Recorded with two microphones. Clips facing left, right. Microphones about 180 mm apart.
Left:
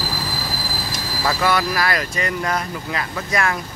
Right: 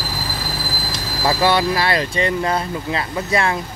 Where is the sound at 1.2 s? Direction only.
25° right (ahead or behind).